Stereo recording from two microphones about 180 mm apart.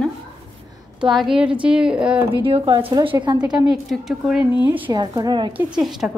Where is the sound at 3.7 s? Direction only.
Centre (ahead or behind).